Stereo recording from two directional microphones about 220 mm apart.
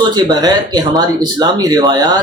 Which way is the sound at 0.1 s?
20° right (ahead or behind).